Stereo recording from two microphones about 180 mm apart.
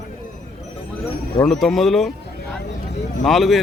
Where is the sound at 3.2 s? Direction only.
Centre (ahead or behind).